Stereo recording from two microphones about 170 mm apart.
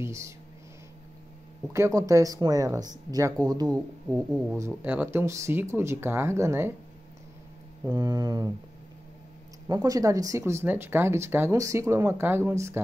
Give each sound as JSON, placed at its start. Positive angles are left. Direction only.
{"t": 0.0, "sound": "speech", "side_deg": -15}
{"t": 1.7, "sound": "speech", "side_deg": -15}
{"t": 4.1, "sound": "speech", "side_deg": -5}
{"t": 7.8, "sound": "speech", "side_deg": -20}
{"t": 9.7, "sound": "speech", "side_deg": -20}